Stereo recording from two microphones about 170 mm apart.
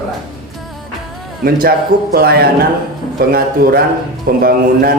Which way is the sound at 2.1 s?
65° right (ahead or behind).